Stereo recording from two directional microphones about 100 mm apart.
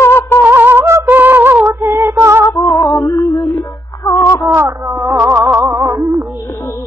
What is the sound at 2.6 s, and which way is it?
Female singing, 30° left (ahead or behind).